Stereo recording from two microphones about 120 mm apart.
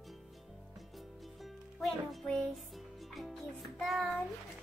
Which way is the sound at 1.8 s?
Centre (ahead or behind).